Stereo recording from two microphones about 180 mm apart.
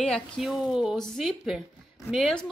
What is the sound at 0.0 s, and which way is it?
Speech, centre (ahead or behind).